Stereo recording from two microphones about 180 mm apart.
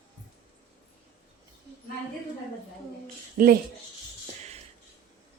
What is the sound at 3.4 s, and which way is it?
Speech, 45° right (ahead or behind).